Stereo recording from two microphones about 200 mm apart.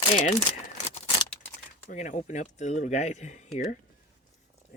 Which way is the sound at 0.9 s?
30° left (ahead or behind).